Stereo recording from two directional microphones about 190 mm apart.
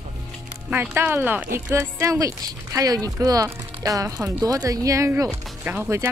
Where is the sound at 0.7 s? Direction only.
10° right (ahead or behind).